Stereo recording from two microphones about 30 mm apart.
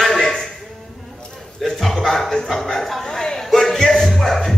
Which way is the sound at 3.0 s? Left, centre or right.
Centre.